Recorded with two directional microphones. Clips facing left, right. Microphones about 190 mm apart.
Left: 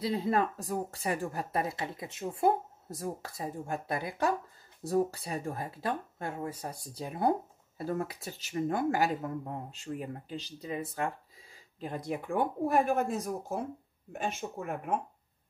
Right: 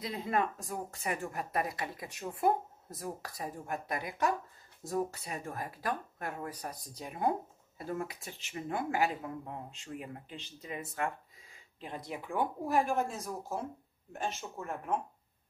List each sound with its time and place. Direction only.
0.0 s speech: 30° left (ahead or behind); by 13.2 s 55° left (ahead or behind)
14.6 s speech: 60° left (ahead or behind)